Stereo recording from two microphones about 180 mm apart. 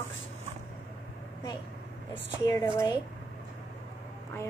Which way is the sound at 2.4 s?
15° left (ahead or behind).